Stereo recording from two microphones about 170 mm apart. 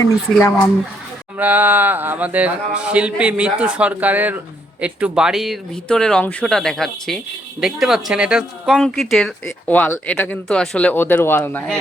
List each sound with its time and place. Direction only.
0.0 s speech: 20° left (ahead or behind)
1.4 s speech: 10° right (ahead or behind); by 11.6 s 10° left (ahead or behind)